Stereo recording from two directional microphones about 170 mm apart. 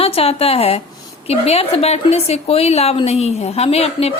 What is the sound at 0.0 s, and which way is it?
A woman's voice, 35° left (ahead or behind).